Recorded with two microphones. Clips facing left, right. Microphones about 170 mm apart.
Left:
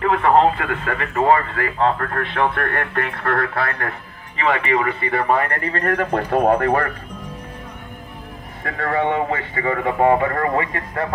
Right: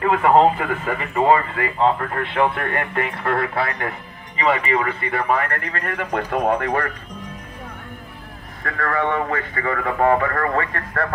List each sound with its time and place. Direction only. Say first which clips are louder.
0.3 s speech: right 1 dB; 5° right (ahead or behind)
5.7 s speech: left 5 dB; 40° left (ahead or behind)
6.5 s speech: left 4 dB; 45° left (ahead or behind)
8.6 s speech: left 2 dB; 25° left (ahead or behind)